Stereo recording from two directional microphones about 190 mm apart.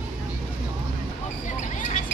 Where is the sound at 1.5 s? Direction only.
40° left (ahead or behind).